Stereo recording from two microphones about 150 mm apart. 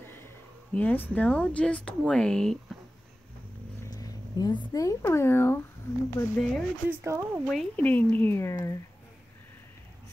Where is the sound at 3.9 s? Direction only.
25° left (ahead or behind).